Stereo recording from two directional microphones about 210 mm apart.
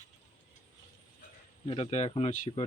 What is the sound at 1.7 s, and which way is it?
Speech, 30° left (ahead or behind).